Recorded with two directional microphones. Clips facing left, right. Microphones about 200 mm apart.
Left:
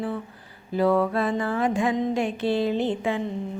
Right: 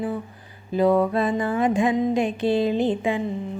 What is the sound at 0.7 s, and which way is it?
Mantra, 20° right (ahead or behind).